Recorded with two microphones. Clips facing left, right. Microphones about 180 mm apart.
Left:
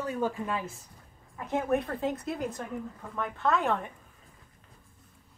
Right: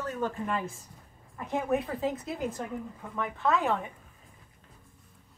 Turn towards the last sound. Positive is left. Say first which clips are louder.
# even
turn(degrees=0)  # may be behind; listen again after turning